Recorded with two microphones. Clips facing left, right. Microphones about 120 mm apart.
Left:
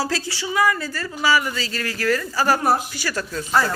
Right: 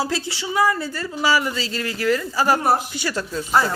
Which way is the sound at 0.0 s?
20° right (ahead or behind).